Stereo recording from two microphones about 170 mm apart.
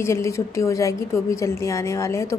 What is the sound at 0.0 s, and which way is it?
A woman's voice, 15° left (ahead or behind).